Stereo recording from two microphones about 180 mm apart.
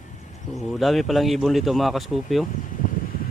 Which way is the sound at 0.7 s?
Centre (ahead or behind).